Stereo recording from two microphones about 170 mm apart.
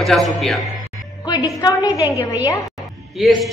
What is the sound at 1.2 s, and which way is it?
Speech, 25° left (ahead or behind).